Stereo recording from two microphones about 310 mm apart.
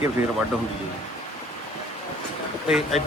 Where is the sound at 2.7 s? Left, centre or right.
Centre.